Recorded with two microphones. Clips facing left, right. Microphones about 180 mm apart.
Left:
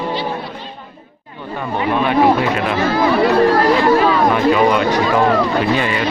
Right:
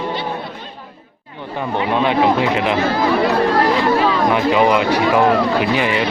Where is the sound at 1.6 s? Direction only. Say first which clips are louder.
Even; 20° right (ahead or behind).